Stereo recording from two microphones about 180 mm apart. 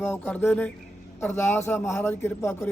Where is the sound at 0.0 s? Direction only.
10° left (ahead or behind).